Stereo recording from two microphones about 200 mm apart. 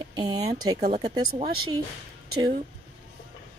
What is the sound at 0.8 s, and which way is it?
Speech, 35° right (ahead or behind).